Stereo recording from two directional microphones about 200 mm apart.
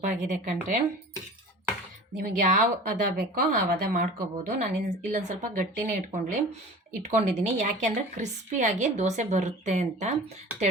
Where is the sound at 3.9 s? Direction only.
45° right (ahead or behind).